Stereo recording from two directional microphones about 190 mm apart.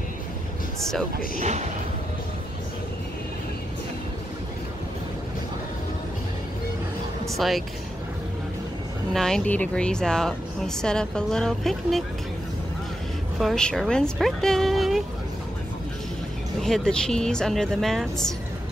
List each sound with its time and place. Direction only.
1.4 s speech: 35° right (ahead or behind)
7.2 s speech: centre (ahead or behind)
9.1 s a woman's voice: centre (ahead or behind)
13.4 s a woman's voice: centre (ahead or behind)
16.6 s a woman's voice: 5° left (ahead or behind)